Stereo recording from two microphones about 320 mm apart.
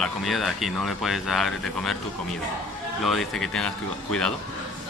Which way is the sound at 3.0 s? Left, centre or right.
Centre.